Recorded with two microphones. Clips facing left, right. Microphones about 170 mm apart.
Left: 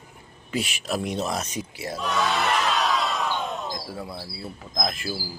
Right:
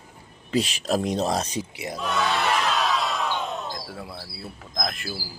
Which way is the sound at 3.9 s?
Centre (ahead or behind).